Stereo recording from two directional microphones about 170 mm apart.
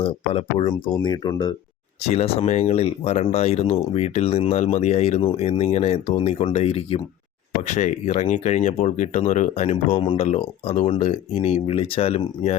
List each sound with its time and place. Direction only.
0.0 s speech: 30° left (ahead or behind)
2.0 s speech: 35° left (ahead or behind)